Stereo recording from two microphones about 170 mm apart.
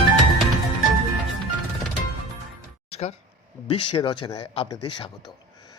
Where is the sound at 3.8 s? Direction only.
30° left (ahead or behind).